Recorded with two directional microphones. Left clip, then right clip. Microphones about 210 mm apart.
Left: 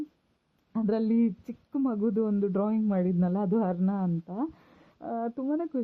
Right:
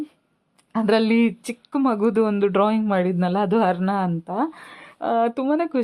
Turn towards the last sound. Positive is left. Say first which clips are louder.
# right 9 dB
turn(degrees=-15)  # may be behind; listen again after turning